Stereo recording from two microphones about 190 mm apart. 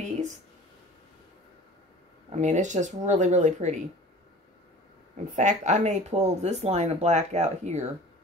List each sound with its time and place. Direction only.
2.3 s speech: 40° right (ahead or behind)
5.1 s speech: 40° right (ahead or behind)